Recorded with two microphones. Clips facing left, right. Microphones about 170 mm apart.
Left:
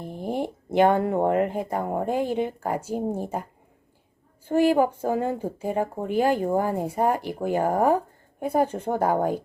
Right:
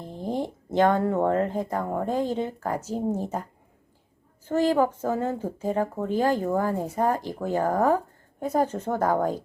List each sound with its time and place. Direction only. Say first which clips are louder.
0.0 s a sound: left 1 dB; 10° left (ahead or behind)
0.7 s a woman's voice: left 2 dB; 10° left (ahead or behind)
4.4 s a woman's voice: left 2 dB; 10° left (ahead or behind)